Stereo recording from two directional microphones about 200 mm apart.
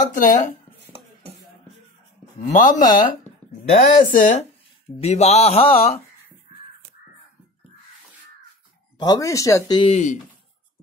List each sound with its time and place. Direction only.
0.0 s speech: 40° left (ahead or behind)
2.5 s speech: 40° left (ahead or behind)
8.9 s speech: 20° left (ahead or behind)